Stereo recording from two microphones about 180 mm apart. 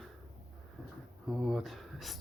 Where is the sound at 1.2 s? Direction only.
Centre (ahead or behind).